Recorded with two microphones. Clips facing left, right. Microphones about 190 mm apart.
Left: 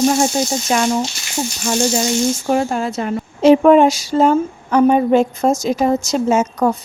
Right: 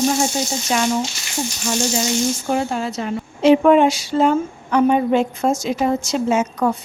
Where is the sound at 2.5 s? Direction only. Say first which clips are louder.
Left 3 dB; 55° left (ahead or behind).